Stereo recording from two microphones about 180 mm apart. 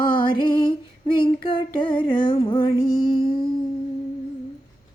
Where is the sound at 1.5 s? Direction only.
30° left (ahead or behind).